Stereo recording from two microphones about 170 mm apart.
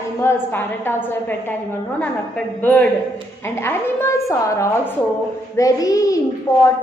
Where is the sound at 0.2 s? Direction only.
15° left (ahead or behind).